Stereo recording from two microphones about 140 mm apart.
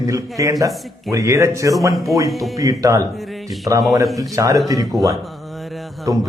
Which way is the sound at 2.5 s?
25° right (ahead or behind).